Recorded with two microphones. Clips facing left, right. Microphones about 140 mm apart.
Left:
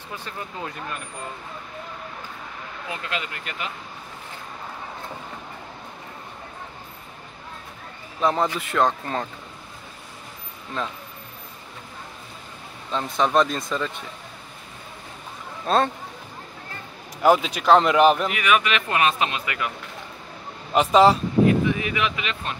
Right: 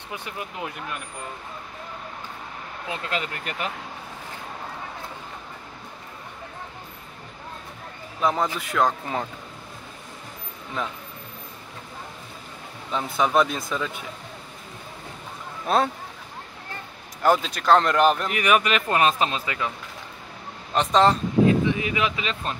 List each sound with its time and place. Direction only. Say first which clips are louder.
0.1 s speech: even; 15° right (ahead or behind)
3.1 s speech: right 2 dB; 40° right (ahead or behind)
8.2 s speech: left 2 dB; 5° right (ahead or behind)
12.9 s speech: left 1 dB; 5° right (ahead or behind)
15.6 s speech: left 1 dB; 5° right (ahead or behind)
17.2 s speech: left 3 dB; 5° left (ahead or behind)
18.3 s speech: right 1 dB; 40° right (ahead or behind)
20.7 s speech: left 3 dB; 5° left (ahead or behind)
21.5 s speech: even; 25° right (ahead or behind)